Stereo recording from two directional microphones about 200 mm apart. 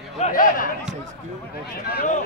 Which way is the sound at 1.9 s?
45° left (ahead or behind).